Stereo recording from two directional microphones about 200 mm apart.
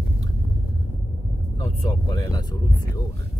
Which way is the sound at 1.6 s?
20° left (ahead or behind).